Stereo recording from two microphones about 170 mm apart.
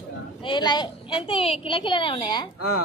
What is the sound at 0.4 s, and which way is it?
A child's voice, 25° left (ahead or behind).